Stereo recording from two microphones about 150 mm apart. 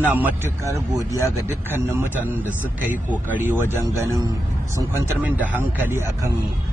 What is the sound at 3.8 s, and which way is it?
Speech, 20° right (ahead or behind).